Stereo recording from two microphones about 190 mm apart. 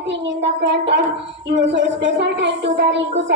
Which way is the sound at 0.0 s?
70° right (ahead or behind).